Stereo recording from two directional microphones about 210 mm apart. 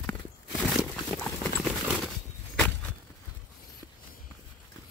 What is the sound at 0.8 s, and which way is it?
Horse, centre (ahead or behind).